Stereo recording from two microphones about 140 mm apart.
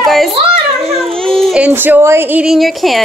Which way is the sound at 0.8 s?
45° right (ahead or behind).